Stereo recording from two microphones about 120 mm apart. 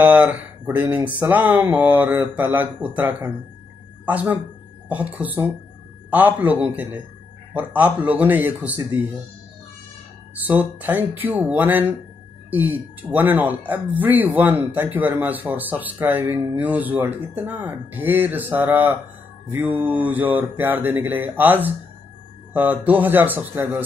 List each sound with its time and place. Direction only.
0.0 s speech: 15° right (ahead or behind)
10.3 s speech: 15° right (ahead or behind)